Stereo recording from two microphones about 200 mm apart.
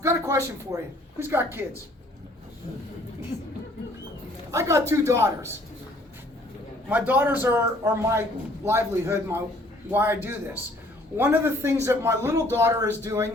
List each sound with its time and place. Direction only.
0.0 s a man's voice: 15° right (ahead or behind)
3.3 s speech: 35° left (ahead or behind)
4.5 s a man's voice: 15° right (ahead or behind)
6.8 s a man's voice: 10° right (ahead or behind)